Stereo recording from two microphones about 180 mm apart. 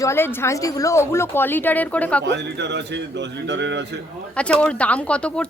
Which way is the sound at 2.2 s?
70° right (ahead or behind).